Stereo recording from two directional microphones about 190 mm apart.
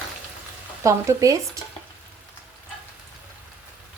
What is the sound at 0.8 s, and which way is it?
Speech, 15° right (ahead or behind).